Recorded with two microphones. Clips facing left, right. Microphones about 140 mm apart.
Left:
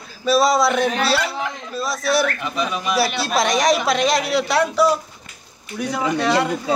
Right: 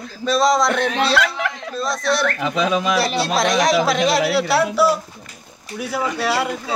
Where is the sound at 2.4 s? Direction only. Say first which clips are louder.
Right 5 dB; 90° right.